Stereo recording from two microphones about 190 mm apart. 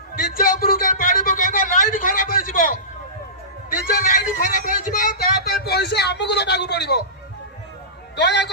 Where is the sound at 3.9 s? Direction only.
45° left (ahead or behind).